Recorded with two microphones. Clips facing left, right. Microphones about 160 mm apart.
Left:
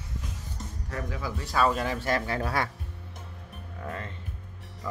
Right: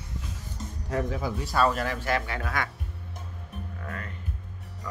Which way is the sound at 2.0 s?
35° left (ahead or behind).